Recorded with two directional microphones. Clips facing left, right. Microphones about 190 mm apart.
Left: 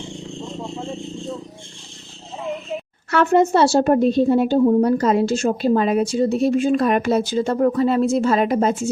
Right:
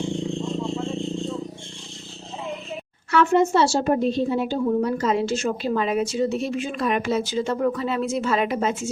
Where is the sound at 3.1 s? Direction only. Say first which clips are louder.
Left 3 dB; 45° left (ahead or behind).